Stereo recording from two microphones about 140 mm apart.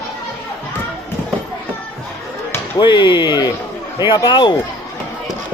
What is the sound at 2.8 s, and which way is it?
Speech, 35° left (ahead or behind).